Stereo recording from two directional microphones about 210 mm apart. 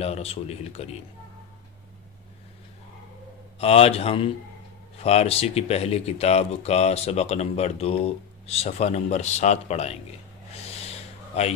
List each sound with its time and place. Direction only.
0.0 s speech: 30° left (ahead or behind)
3.5 s speech: 30° left (ahead or behind)
10.5 s a sound: 30° left (ahead or behind)